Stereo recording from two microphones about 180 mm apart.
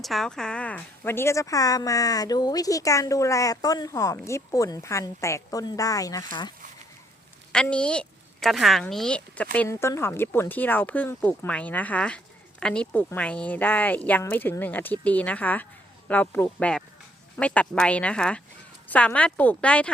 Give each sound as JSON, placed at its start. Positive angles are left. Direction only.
{"t": 0.0, "sound": "speech", "side_deg": 0}
{"t": 7.5, "sound": "a woman's voice", "side_deg": 5}